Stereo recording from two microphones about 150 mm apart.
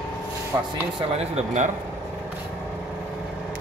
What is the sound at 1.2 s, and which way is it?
Speech, 50° right (ahead or behind).